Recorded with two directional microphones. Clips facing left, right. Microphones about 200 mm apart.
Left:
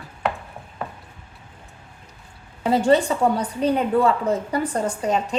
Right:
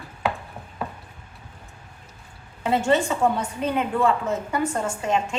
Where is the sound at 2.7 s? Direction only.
35° left (ahead or behind).